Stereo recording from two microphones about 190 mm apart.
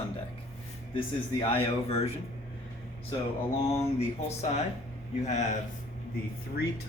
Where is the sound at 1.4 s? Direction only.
30° left (ahead or behind).